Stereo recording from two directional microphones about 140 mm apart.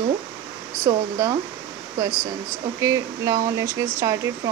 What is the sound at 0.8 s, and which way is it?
Speech, 25° right (ahead or behind).